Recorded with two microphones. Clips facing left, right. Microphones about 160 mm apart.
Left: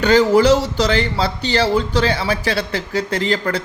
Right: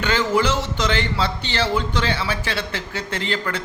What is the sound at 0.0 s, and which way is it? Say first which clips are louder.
Speech: left 8 dB; 40° left (ahead or behind).